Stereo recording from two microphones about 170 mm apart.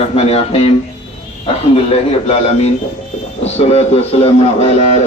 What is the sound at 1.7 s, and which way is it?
A man's voice, 35° left (ahead or behind).